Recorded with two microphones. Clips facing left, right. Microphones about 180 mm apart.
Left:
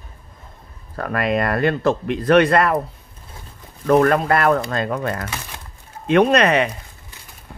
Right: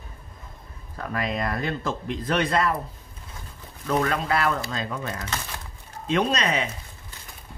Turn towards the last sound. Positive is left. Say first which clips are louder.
# left 9 dB
turn(degrees=65)  # may be behind; listen again after turning